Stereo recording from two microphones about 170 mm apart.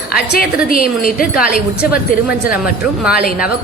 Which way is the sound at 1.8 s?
5° right (ahead or behind).